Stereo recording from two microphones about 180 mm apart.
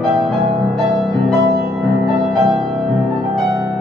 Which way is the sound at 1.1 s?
Centre (ahead or behind).